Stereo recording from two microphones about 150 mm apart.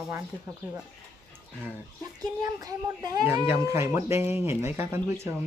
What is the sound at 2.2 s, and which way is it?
Speech, 25° right (ahead or behind).